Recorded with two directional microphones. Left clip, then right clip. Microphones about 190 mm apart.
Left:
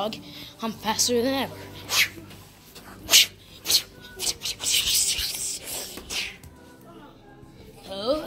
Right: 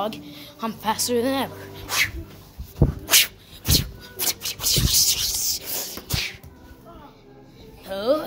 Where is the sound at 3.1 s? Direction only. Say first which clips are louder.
Left 2 dB; 5° right (ahead or behind).